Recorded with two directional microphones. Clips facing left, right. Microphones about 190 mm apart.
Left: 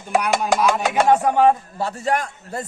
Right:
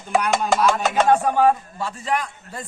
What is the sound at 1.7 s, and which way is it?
Speech, 40° left (ahead or behind).